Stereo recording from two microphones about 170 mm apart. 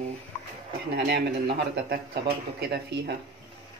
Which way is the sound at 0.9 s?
75° right (ahead or behind).